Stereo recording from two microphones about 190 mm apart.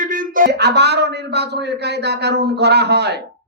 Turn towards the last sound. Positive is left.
turn(degrees=-60)  # may be behind; listen again after turning